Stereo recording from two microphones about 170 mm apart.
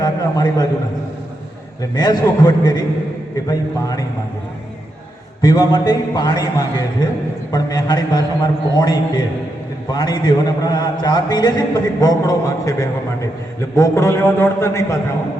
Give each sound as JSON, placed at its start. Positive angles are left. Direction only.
{"t": 0.0, "sound": "a man's voice", "side_deg": 20}
{"t": 2.0, "sound": "a man's voice", "side_deg": 20}
{"t": 5.4, "sound": "a man's voice", "side_deg": 25}